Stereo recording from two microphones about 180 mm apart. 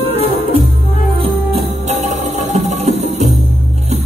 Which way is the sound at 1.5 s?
40° right (ahead or behind).